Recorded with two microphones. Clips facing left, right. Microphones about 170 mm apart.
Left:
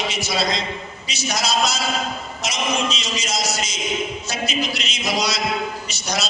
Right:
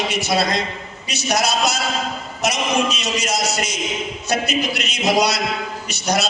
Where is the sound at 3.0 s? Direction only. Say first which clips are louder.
Right 4 dB; 65° right (ahead or behind).